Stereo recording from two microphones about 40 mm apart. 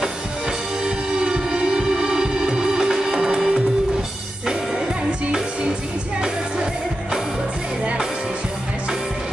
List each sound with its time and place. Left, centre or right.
0.8 s music: right
6.2 s music: right